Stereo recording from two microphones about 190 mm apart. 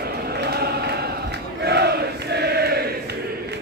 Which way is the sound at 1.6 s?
60° right (ahead or behind).